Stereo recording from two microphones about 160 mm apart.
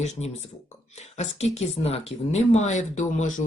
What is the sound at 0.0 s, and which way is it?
Speech, 45° left (ahead or behind).